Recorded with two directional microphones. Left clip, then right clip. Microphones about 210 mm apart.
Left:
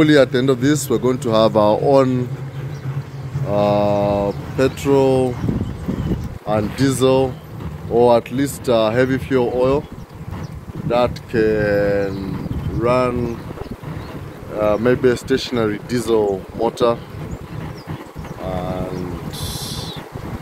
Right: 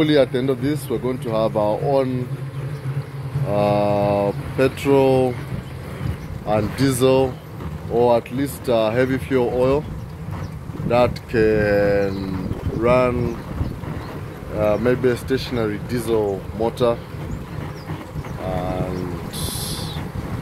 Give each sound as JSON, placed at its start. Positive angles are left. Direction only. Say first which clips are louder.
{"t": 0.0, "sound": "speech", "louder": "left 4 dB", "side_deg": 20}
{"t": 3.4, "sound": "speech", "louder": "left 2 dB", "side_deg": 10}
{"t": 6.4, "sound": "speech", "louder": "left 1 dB", "side_deg": 10}
{"t": 7.9, "sound": "speech", "louder": "left 3 dB", "side_deg": 30}
{"t": 10.9, "sound": "speech", "louder": "even", "side_deg": 0}
{"t": 14.6, "sound": "speech", "louder": "left 3 dB", "side_deg": 20}
{"t": 19.3, "sound": "a sound", "louder": "left 1 dB", "side_deg": 0}